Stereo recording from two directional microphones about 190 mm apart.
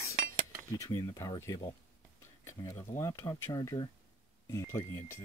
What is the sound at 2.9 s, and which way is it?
Speech, 15° left (ahead or behind).